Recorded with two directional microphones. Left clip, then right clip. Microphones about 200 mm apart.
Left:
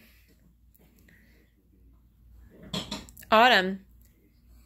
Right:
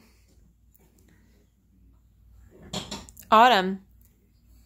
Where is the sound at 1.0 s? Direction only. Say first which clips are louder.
Left 5 dB; 10° right (ahead or behind).